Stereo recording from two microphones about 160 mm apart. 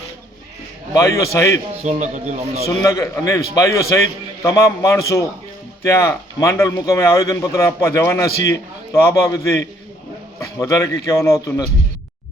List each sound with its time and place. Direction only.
0.9 s speech: 20° left (ahead or behind)
1.8 s speech: 50° right (ahead or behind)
2.6 s speech: 20° left (ahead or behind)